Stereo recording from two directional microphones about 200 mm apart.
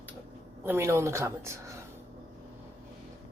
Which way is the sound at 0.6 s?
10° right (ahead or behind).